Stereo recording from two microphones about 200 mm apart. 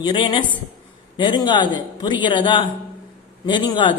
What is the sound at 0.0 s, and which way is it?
A woman's voice, 25° left (ahead or behind).